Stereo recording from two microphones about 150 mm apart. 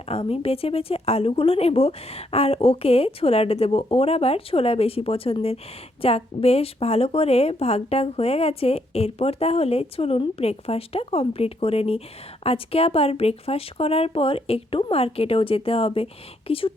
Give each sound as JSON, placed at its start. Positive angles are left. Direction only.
{"t": 0.1, "sound": "a woman's voice", "side_deg": 40}